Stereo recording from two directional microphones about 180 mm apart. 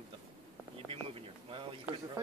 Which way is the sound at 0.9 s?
30° right (ahead or behind).